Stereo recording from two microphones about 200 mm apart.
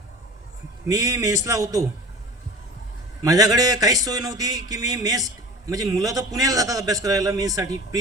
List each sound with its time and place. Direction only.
0.9 s speech: 15° right (ahead or behind)
3.2 s speech: 20° right (ahead or behind)